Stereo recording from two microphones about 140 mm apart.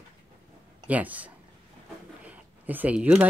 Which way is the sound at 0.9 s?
10° right (ahead or behind).